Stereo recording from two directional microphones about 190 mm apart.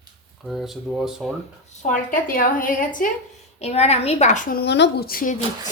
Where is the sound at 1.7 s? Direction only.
40° left (ahead or behind).